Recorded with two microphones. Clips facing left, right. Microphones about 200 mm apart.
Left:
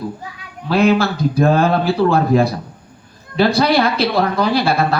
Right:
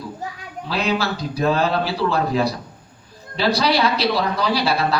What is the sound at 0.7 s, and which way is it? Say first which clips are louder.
Speech: left 8 dB; 50° left (ahead or behind).